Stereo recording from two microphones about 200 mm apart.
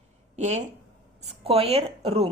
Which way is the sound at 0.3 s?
35° right (ahead or behind).